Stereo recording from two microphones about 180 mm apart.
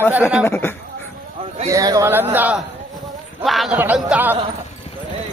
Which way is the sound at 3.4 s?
Centre (ahead or behind).